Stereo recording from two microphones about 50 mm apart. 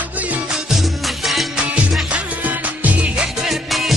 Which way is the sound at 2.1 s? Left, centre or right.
Right.